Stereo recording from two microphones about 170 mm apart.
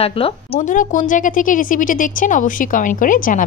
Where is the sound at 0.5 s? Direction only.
50° left (ahead or behind).